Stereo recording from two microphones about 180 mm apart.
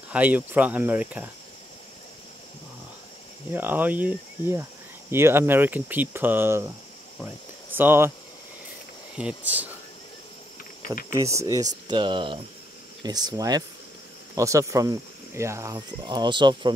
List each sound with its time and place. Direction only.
0.1 s speech: 10° right (ahead or behind)
3.5 s speech: 10° right (ahead or behind)
7.7 s speech: 10° right (ahead or behind)
9.1 s speech: 5° right (ahead or behind)
11.1 s speech: 15° right (ahead or behind)